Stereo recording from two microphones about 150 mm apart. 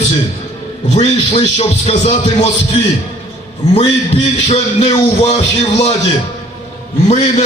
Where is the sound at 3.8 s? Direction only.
40° left (ahead or behind).